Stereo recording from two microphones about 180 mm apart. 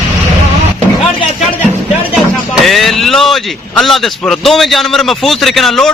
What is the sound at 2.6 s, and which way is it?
A man's voice, centre (ahead or behind).